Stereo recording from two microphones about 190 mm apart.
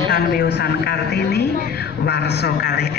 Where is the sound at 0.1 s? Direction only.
60° left (ahead or behind).